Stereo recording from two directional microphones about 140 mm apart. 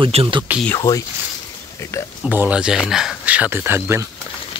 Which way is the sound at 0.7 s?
25° left (ahead or behind).